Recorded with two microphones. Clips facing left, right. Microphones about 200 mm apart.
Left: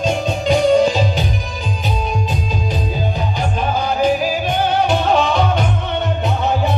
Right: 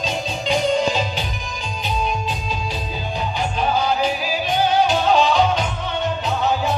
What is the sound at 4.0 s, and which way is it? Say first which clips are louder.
Music: left 6 dB; 45° left (ahead or behind).